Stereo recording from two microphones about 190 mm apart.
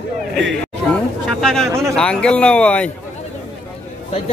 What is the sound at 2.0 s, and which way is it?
Speech, 5° left (ahead or behind).